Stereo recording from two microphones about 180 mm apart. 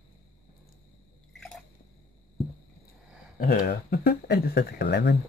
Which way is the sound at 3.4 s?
55° left (ahead or behind).